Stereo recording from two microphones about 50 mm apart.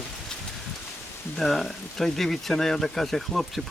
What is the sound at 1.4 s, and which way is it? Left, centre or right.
Speech, centre.